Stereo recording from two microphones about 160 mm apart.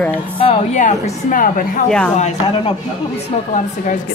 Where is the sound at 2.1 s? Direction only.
45° left (ahead or behind).